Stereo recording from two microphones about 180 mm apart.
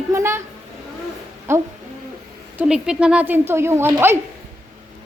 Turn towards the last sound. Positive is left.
turn(degrees=-10)  # may be behind; listen again after turning